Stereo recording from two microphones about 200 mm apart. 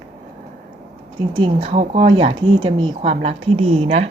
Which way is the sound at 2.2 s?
25° right (ahead or behind).